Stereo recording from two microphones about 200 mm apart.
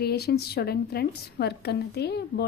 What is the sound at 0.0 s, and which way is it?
A woman's voice, 50° left (ahead or behind).